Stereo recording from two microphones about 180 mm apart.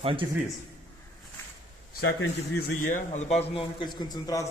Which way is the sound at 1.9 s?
75° left (ahead or behind).